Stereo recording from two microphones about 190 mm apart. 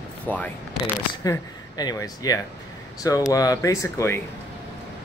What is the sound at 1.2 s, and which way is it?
Speech, 20° left (ahead or behind).